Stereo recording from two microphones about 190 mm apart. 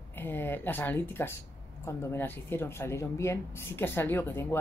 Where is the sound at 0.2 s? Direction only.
10° left (ahead or behind).